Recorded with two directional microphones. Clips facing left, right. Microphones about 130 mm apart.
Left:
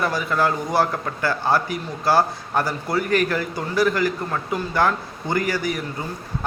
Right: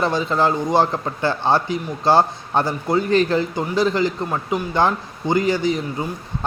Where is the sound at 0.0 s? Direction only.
25° right (ahead or behind).